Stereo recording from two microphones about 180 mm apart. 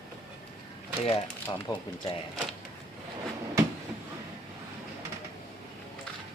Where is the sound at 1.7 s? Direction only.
25° left (ahead or behind).